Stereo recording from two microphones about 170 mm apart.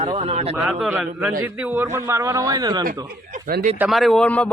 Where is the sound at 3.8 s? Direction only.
Centre (ahead or behind).